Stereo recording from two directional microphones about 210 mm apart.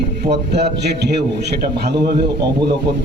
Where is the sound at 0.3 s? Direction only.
50° right (ahead or behind).